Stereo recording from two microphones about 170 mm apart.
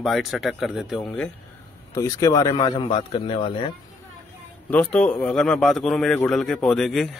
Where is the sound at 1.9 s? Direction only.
20° left (ahead or behind).